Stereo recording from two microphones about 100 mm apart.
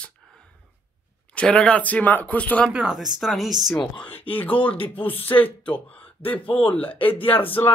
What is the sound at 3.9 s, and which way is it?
A man's voice, 15° left (ahead or behind).